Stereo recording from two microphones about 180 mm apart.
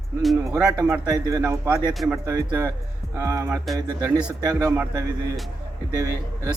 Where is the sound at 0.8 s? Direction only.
20° right (ahead or behind).